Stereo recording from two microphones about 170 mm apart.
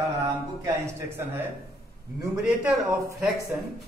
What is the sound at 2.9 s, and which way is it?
Speech, 15° right (ahead or behind).